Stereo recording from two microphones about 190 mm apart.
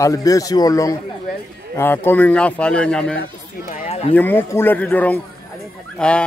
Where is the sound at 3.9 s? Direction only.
35° left (ahead or behind).